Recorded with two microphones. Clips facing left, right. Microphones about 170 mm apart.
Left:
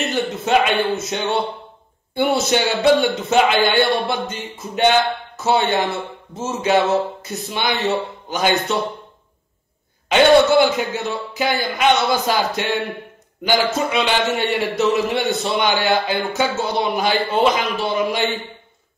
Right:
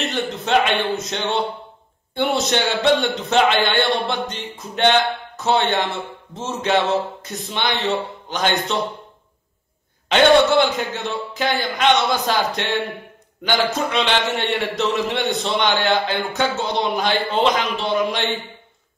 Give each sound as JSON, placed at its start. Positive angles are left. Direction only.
{"t": 0.0, "sound": "a man's voice", "side_deg": 5}
{"t": 10.0, "sound": "a man's voice", "side_deg": 5}